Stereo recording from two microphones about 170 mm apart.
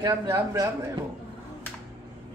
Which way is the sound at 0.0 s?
20° right (ahead or behind).